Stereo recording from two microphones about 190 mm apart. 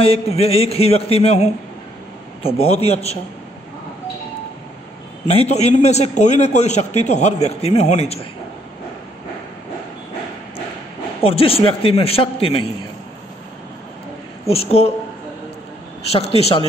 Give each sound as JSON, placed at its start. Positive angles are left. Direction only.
{"t": 0.0, "sound": "a man's voice", "side_deg": 30}
{"t": 5.2, "sound": "a man's voice", "side_deg": 35}
{"t": 11.2, "sound": "a man's voice", "side_deg": 30}
{"t": 14.5, "sound": "a man's voice", "side_deg": 30}
{"t": 16.1, "sound": "a man's voice", "side_deg": 35}